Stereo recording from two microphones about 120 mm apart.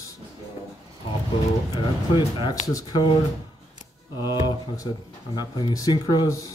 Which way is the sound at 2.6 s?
30° left (ahead or behind).